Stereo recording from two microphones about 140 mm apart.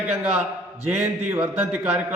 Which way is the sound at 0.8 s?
15° right (ahead or behind).